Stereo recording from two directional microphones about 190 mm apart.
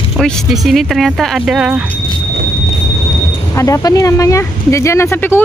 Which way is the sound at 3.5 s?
15° left (ahead or behind).